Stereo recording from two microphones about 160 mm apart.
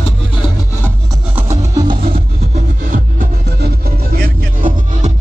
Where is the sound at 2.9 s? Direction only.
75° right (ahead or behind).